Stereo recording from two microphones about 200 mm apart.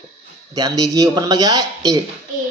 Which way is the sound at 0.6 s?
20° right (ahead or behind).